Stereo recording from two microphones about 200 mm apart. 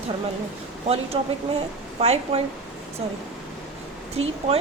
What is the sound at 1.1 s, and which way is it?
A woman's voice, 25° right (ahead or behind).